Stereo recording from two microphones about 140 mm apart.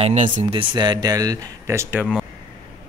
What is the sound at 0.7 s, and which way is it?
Speech, 30° right (ahead or behind).